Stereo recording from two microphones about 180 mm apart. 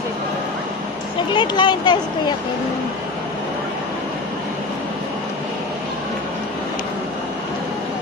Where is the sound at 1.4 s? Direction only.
25° left (ahead or behind).